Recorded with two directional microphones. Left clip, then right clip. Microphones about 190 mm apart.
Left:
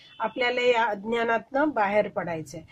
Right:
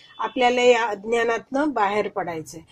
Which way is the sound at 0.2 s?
30° right (ahead or behind).